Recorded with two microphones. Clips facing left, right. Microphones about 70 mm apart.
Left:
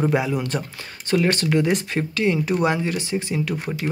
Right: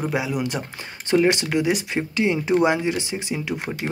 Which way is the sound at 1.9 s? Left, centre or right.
Centre.